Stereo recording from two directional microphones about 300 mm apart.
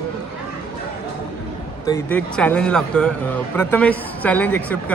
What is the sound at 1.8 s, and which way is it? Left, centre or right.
Speech, centre.